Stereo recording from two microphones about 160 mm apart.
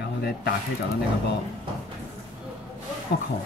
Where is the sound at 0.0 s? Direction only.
90° left.